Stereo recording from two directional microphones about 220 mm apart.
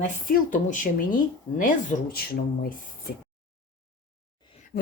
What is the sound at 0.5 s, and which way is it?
Speech, 35° left (ahead or behind).